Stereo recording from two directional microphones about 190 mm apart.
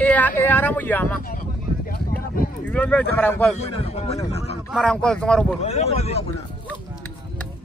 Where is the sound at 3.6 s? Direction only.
30° left (ahead or behind).